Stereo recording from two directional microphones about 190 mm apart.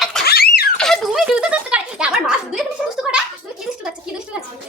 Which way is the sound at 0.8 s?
Centre (ahead or behind).